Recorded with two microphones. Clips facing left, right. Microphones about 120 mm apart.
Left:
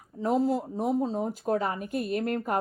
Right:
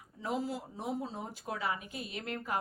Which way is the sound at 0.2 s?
45° left (ahead or behind).